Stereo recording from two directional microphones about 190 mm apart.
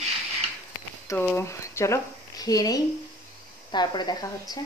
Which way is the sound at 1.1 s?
10° left (ahead or behind).